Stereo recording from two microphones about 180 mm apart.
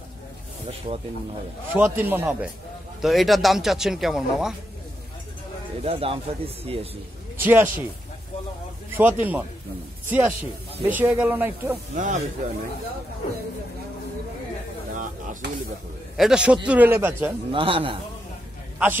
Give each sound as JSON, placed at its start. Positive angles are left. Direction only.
{"t": 0.9, "sound": "a man's voice", "side_deg": -30}
{"t": 1.7, "sound": "speech", "side_deg": -10}
{"t": 3.0, "sound": "speech", "side_deg": 0}
{"t": 5.9, "sound": "speech", "side_deg": -30}
{"t": 7.3, "sound": "speech", "side_deg": -10}
{"t": 8.9, "sound": "speech", "side_deg": -10}
{"t": 11.9, "sound": "speech", "side_deg": -45}
{"t": 16.2, "sound": "speech", "side_deg": -5}
{"t": 17.5, "sound": "a man's voice", "side_deg": -30}